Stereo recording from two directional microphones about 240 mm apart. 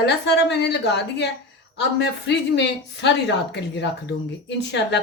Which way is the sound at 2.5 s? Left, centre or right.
Left.